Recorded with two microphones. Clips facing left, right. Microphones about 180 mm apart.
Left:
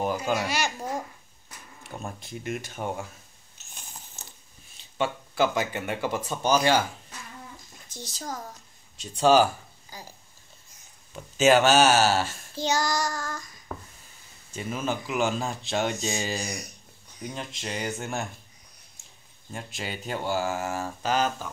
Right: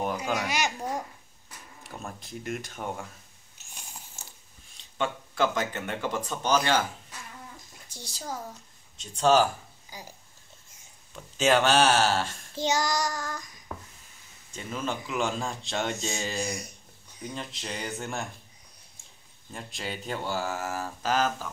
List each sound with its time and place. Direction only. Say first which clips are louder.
0.5 s speech: even; 15° right (ahead or behind)
2.0 s speech: left 1 dB; centre (ahead or behind)
3.5 s a sound: even; 10° right (ahead or behind)
4.7 s speech: left 2 dB; 5° left (ahead or behind)
7.9 s speech: left 1 dB; 10° right (ahead or behind)
8.9 s speech: left 2 dB; 10° left (ahead or behind)
9.8 s speech: even; 15° right (ahead or behind)
11.3 s speech: left 3 dB; 5° left (ahead or behind)
12.5 s child singing: left 1 dB; 20° right (ahead or behind)
13.7 s a sound: left 2 dB; 5° right (ahead or behind)
14.5 s speech: left 3 dB; 5° left (ahead or behind)
16.4 s child singing: right 1 dB; 25° right (ahead or behind)
17.3 s speech: left 2 dB; centre (ahead or behind)
19.5 s speech: left 1 dB; 5° left (ahead or behind)